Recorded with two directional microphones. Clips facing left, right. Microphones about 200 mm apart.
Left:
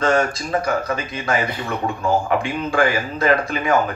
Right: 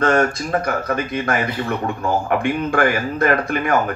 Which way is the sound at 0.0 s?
55° right (ahead or behind).